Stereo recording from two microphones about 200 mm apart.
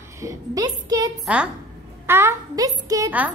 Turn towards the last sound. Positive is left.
turn(degrees=-15)  # may be behind; listen again after turning